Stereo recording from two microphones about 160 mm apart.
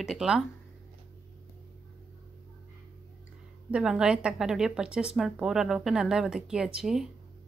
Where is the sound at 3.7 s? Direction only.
5° right (ahead or behind).